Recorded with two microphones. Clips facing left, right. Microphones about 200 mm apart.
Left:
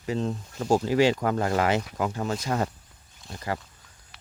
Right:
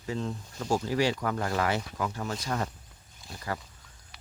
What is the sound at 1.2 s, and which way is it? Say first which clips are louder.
Speech: left 5 dB; 30° left (ahead or behind).